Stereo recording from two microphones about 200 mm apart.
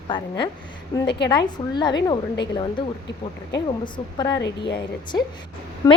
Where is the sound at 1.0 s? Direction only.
55° left (ahead or behind).